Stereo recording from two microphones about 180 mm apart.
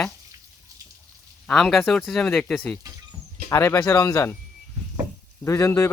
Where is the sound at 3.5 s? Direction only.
15° left (ahead or behind).